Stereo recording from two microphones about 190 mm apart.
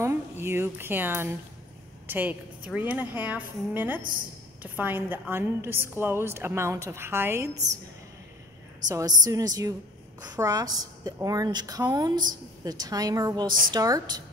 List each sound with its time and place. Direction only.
0.0 s a woman's voice: 15° right (ahead or behind)
8.8 s a woman's voice: 20° right (ahead or behind)